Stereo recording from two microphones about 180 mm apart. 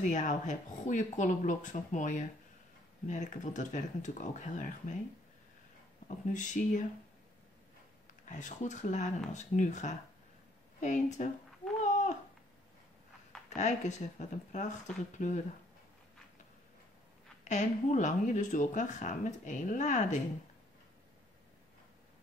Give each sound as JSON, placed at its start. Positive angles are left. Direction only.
{"t": 0.0, "sound": "speech", "side_deg": 45}
{"t": 6.0, "sound": "speech", "side_deg": 45}
{"t": 8.3, "sound": "speech", "side_deg": 45}
{"t": 11.8, "sound": "a sound", "side_deg": 40}
{"t": 13.6, "sound": "speech", "side_deg": 40}
{"t": 17.5, "sound": "speech", "side_deg": 45}